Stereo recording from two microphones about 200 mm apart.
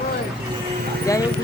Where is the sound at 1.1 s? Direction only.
15° left (ahead or behind).